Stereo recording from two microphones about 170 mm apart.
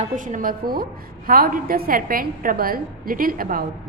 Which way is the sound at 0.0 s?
50° right (ahead or behind).